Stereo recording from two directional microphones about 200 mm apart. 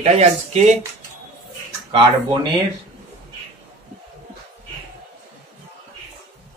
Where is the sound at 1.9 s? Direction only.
25° right (ahead or behind).